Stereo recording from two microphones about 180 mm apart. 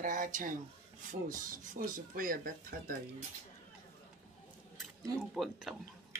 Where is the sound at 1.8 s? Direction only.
50° right (ahead or behind).